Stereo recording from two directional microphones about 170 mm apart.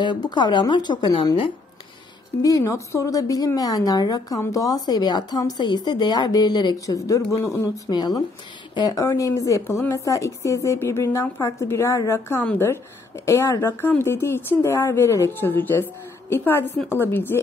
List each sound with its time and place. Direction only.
0.0 s a woman's voice: 25° left (ahead or behind)
2.4 s a woman's voice: 20° left (ahead or behind)